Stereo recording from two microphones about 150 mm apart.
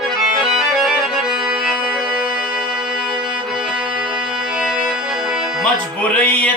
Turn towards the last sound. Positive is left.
turn(degrees=10)  # may be behind; listen again after turning